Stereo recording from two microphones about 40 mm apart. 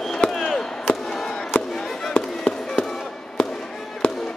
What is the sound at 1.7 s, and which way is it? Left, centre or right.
Music, centre.